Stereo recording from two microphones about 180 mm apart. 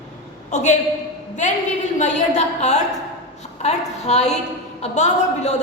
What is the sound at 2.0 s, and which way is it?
A woman's voice, 40° left (ahead or behind).